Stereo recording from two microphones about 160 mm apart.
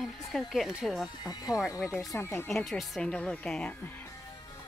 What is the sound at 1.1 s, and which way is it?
Speech, 25° left (ahead or behind).